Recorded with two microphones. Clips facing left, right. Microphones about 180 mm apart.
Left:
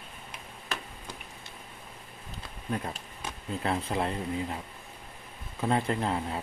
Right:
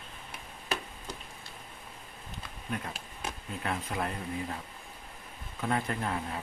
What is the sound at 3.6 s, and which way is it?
Speech, 30° left (ahead or behind).